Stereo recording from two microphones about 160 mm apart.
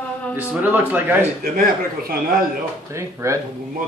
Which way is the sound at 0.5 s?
10° right (ahead or behind).